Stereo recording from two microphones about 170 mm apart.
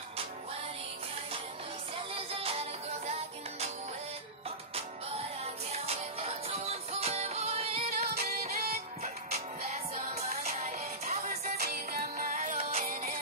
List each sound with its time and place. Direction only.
2.1 s music: 35° right (ahead or behind)
5.7 s music: 35° right (ahead or behind)
8.2 s music: 65° right (ahead or behind)
9.0 s music: 40° right (ahead or behind)
10.3 s music: 55° right (ahead or behind)